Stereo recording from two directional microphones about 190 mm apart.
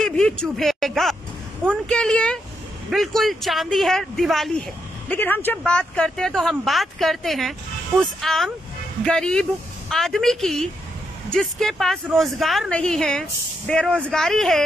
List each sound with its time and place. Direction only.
0.0 s speech: 5° left (ahead or behind)